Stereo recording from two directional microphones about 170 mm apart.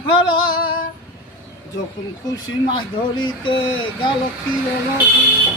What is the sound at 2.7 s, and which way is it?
Speech, 25° left (ahead or behind).